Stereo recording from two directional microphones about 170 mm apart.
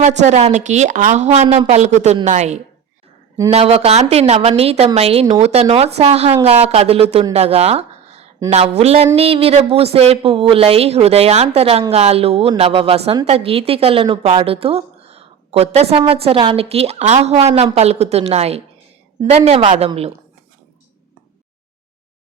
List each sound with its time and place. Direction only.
0.2 s a woman's voice: 45° right (ahead or behind)
7.3 s a sound: 40° right (ahead or behind)
8.4 s a woman's voice: 40° right (ahead or behind)